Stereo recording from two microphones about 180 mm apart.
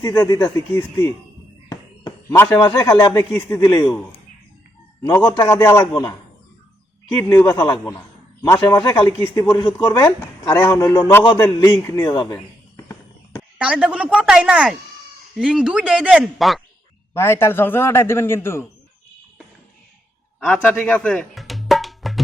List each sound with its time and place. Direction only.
0.0 s a man's voice: 20° left (ahead or behind)
1.7 s a sound: 15° left (ahead or behind)
2.6 s a man's voice: 15° left (ahead or behind)
5.1 s a man's voice: 15° left (ahead or behind)
7.1 s a man's voice: 15° left (ahead or behind)
11.2 s speech: 25° left (ahead or behind)
11.4 s a sound: 15° left (ahead or behind)
13.6 s a woman's voice: 5° right (ahead or behind)
17.2 s a man's voice: 15° left (ahead or behind)
20.4 s music: 10° left (ahead or behind)